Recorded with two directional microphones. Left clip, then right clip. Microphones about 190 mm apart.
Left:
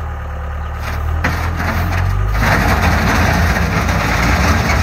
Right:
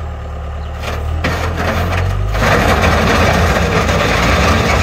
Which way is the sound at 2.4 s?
20° right (ahead or behind).